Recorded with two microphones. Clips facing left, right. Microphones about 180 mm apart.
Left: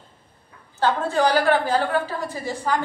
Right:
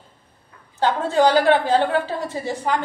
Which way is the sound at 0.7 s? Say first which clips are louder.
Right 2 dB; 20° right (ahead or behind).